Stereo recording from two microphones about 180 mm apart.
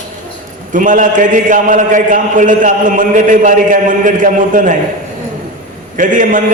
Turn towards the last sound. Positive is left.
turn(degrees=-45)  # may be behind; listen again after turning